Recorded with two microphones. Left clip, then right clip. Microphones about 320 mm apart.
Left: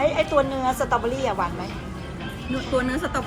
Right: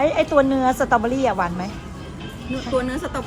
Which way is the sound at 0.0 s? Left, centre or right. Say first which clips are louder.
Right 3 dB; right.